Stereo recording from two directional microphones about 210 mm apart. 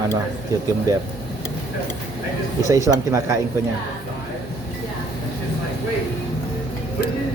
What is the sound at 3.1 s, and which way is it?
Speech, 15° right (ahead or behind).